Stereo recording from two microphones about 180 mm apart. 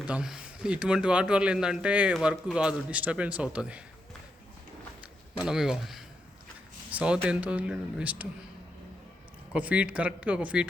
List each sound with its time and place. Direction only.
0.0 s speech: 5° right (ahead or behind)
5.4 s speech: 5° right (ahead or behind)
9.5 s speech: 10° right (ahead or behind)